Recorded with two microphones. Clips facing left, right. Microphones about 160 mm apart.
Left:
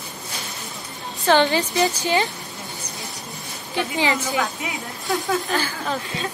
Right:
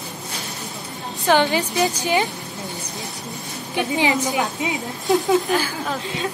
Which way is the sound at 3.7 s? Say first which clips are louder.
Right 2 dB; 15° right (ahead or behind).